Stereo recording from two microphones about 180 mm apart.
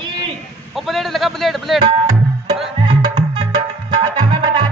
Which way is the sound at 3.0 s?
25° right (ahead or behind).